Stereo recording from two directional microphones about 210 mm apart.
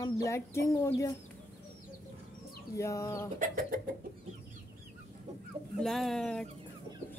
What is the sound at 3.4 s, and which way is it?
Chicken, 40° right (ahead or behind).